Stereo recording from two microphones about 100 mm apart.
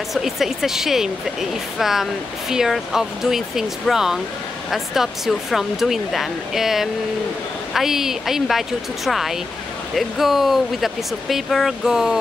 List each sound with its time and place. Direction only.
0.1 s speech: centre (ahead or behind)